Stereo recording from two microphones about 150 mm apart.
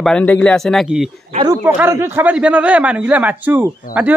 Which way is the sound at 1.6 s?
15° right (ahead or behind).